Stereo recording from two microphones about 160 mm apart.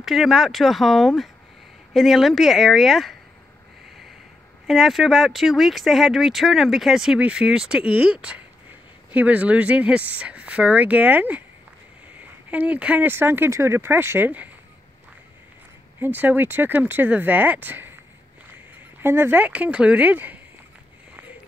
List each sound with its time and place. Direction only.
0.0 s speech: centre (ahead or behind)
4.6 s speech: centre (ahead or behind)
16.0 s speech: 10° right (ahead or behind)
18.9 s speech: 15° right (ahead or behind)